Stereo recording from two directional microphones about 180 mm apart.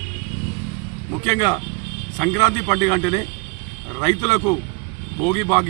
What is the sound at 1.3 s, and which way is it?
A man's voice, 20° left (ahead or behind).